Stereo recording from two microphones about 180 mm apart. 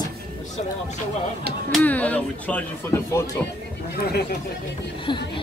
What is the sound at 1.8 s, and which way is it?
Speech, 10° left (ahead or behind).